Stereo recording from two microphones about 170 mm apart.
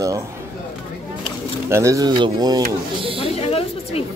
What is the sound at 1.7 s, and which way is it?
Speech, 20° right (ahead or behind).